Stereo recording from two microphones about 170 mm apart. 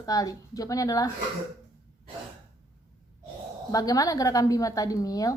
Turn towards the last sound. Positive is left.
turn(degrees=20)  # may be behind; listen again after turning